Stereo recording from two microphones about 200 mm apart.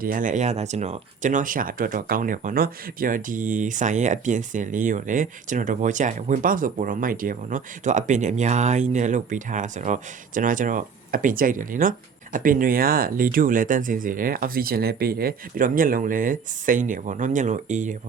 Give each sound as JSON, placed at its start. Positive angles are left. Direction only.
{"t": 0.0, "sound": "speech", "side_deg": -40}